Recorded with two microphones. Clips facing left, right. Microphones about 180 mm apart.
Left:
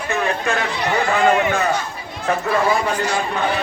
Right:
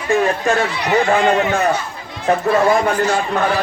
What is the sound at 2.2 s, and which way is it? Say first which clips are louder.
Speech: right 4 dB; 45° right (ahead or behind).